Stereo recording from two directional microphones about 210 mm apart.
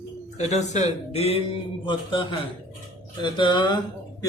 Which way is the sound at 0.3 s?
35° left (ahead or behind).